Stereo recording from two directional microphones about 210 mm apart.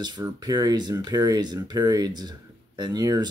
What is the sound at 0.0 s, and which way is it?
Speech, 20° right (ahead or behind).